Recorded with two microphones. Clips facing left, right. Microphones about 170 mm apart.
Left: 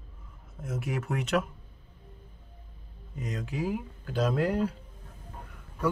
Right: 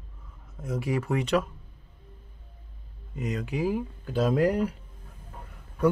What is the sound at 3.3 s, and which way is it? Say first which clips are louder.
Speech: right 4 dB; centre (ahead or behind).